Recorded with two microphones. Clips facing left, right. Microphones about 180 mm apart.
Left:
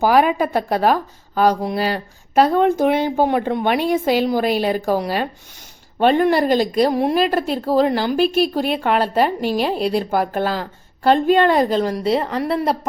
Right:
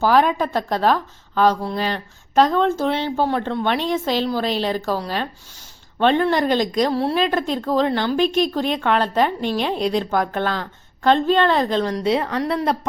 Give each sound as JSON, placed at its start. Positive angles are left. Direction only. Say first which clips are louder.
{"t": 0.0, "sound": "a woman's voice", "louder": "left 2 dB", "side_deg": 10}